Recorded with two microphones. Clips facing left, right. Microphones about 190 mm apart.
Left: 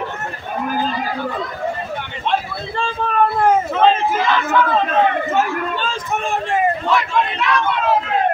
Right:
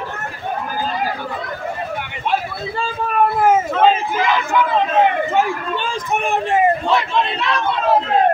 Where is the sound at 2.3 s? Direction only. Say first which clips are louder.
Even; 5° right (ahead or behind).